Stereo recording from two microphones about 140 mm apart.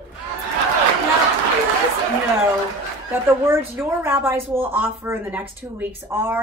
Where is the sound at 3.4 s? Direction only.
15° right (ahead or behind).